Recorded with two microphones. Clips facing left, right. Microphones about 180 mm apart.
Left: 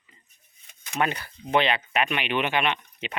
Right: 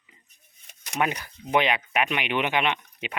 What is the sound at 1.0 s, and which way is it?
Speech, 15° right (ahead or behind).